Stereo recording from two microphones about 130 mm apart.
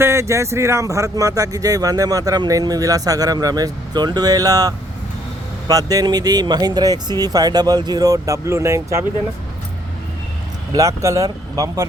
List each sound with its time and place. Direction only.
0.0 s speech: 20° right (ahead or behind)
10.8 s speech: 25° right (ahead or behind)